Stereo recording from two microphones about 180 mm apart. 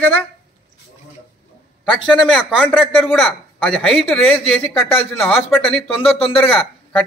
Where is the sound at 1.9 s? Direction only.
5° left (ahead or behind).